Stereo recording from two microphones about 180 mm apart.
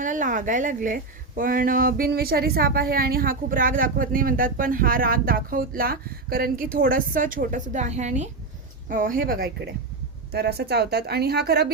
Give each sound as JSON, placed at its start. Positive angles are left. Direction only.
{"t": 0.0, "sound": "a woman's voice", "side_deg": -45}